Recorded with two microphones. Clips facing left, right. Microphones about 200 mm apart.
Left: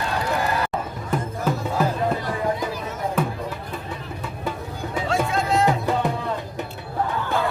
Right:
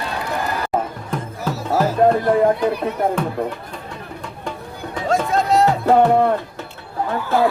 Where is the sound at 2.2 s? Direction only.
60° right (ahead or behind).